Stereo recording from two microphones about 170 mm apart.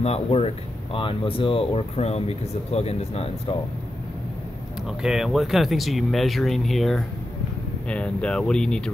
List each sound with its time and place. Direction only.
0.0 s speech: 35° left (ahead or behind)
4.8 s speech: centre (ahead or behind)